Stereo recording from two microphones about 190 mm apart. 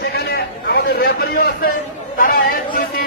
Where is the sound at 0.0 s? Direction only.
55° left (ahead or behind).